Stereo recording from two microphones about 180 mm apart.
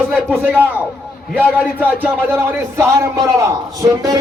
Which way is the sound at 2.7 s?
15° right (ahead or behind).